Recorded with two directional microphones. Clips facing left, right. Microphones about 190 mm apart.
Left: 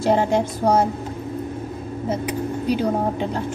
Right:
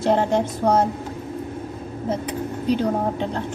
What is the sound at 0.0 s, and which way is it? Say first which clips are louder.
Speech: left 1 dB; 10° left (ahead or behind).